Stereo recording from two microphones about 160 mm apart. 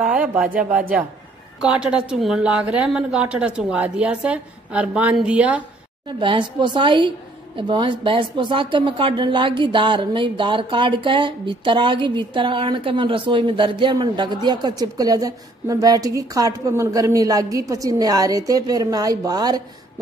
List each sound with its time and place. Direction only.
0.0 s speech: 10° right (ahead or behind)
6.0 s a woman's voice: 30° right (ahead or behind)